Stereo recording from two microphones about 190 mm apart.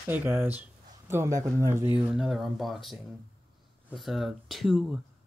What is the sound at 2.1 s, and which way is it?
Speech, 5° right (ahead or behind).